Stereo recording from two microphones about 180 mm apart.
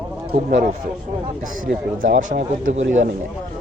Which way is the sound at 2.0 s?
90° right.